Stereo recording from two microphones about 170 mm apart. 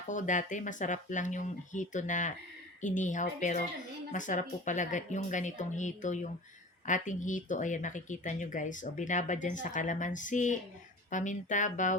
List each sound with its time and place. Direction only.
0.1 s speech: 45° left (ahead or behind)